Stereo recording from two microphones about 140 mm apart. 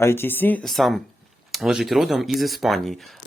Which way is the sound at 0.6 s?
Centre (ahead or behind).